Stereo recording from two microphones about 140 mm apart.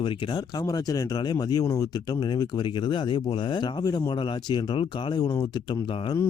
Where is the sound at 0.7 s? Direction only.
25° left (ahead or behind).